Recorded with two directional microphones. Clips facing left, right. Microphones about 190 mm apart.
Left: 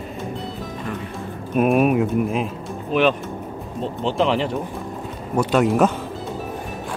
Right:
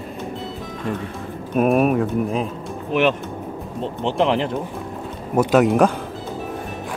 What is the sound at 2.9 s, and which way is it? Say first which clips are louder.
Speech: even; 15° right (ahead or behind).